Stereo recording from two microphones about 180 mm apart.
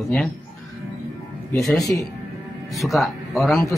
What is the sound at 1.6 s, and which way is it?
Speech, centre (ahead or behind).